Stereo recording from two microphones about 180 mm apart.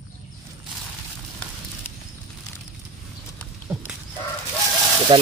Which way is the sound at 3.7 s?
15° right (ahead or behind).